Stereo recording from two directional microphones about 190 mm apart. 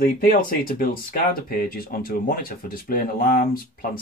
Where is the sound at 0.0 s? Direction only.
50° left (ahead or behind).